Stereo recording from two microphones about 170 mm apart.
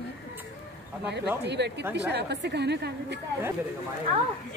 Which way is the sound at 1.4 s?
85° right.